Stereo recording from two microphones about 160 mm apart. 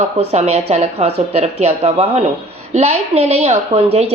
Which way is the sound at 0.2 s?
40° right (ahead or behind).